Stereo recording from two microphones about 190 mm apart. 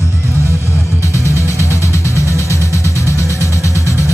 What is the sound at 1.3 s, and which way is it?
Music, 15° right (ahead or behind).